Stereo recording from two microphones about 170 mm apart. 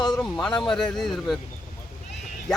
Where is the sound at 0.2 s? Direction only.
5° left (ahead or behind).